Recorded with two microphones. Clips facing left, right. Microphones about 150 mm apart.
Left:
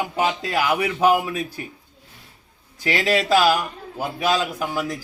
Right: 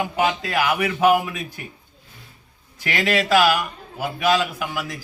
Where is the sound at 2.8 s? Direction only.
35° left (ahead or behind).